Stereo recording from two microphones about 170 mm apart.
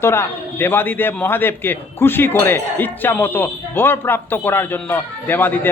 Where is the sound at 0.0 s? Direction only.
15° left (ahead or behind).